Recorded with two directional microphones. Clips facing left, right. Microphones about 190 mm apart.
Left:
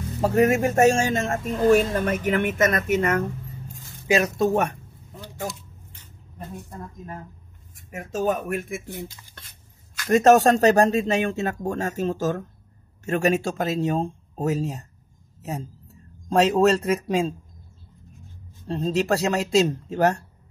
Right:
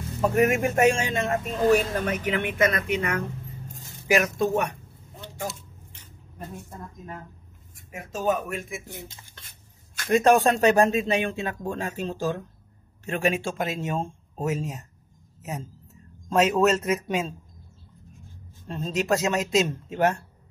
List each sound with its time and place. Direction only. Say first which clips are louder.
0.2 s speech: left 2 dB; 35° left (ahead or behind); by 3.2 s 50° left (ahead or behind)
4.1 s speech: left 2 dB; 35° left (ahead or behind)
7.9 s speech: left 2 dB; 45° left (ahead or behind)
10.1 s speech: left 3 dB; 40° left (ahead or behind)
16.3 s speech: left 2 dB; 35° left (ahead or behind)
18.7 s speech: left 3 dB; 35° left (ahead or behind)